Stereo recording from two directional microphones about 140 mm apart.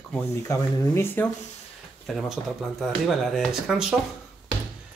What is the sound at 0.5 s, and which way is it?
Speech, 15° left (ahead or behind).